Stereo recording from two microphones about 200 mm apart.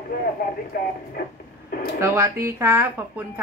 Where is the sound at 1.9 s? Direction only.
15° right (ahead or behind).